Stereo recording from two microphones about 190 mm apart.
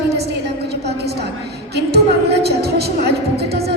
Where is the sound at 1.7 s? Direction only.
60° right (ahead or behind).